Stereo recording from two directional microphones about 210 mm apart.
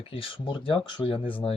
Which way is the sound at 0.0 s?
25° left (ahead or behind).